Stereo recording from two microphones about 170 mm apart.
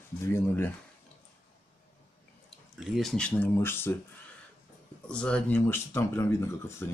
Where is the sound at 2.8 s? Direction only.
Centre (ahead or behind).